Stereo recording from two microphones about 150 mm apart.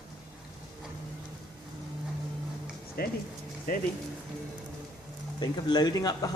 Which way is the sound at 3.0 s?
90° left.